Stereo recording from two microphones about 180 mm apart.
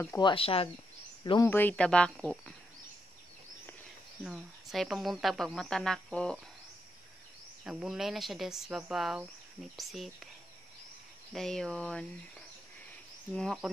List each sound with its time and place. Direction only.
0.2 s speech: 30° left (ahead or behind)
1.5 s speech: 10° left (ahead or behind)
4.2 s speech: 5° right (ahead or behind)
7.6 s speech: 5° right (ahead or behind)
11.3 s speech: 5° left (ahead or behind)